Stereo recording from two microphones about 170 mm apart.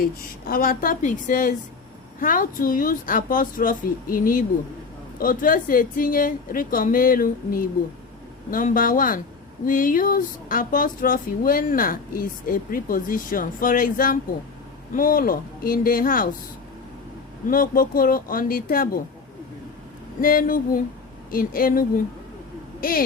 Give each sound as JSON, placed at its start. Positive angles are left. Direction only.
{"t": 0.0, "sound": "a woman's voice", "side_deg": 60}
{"t": 17.5, "sound": "a woman's voice", "side_deg": 55}
{"t": 20.2, "sound": "a woman's voice", "side_deg": 55}